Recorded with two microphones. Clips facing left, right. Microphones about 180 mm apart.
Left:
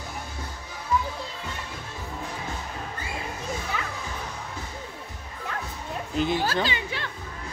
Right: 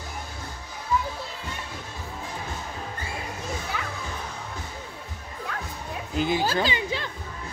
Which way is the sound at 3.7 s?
5° right (ahead or behind).